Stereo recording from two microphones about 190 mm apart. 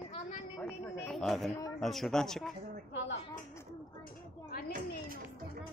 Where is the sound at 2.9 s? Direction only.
75° left (ahead or behind).